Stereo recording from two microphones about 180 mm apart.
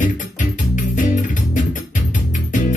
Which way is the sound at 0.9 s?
45° left (ahead or behind).